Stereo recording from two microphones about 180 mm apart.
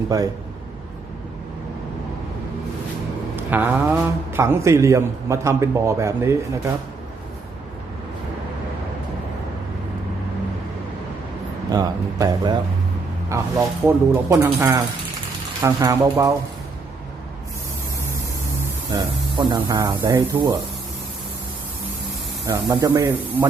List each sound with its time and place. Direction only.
0.1 s speech: 20° right (ahead or behind)
3.3 s a man's voice: 10° right (ahead or behind)
11.7 s a man's voice: 20° right (ahead or behind)
18.9 s speech: 25° right (ahead or behind)
22.4 s a man's voice: 15° right (ahead or behind)